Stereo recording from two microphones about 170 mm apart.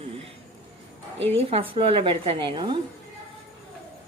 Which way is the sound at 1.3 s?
35° right (ahead or behind).